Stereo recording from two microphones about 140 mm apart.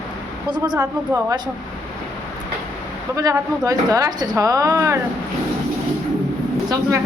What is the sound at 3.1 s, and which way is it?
Speech, 25° right (ahead or behind).